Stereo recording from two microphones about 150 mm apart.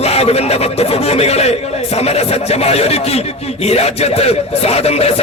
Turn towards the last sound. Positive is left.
turn(degrees=45)  # may be behind; listen again after turning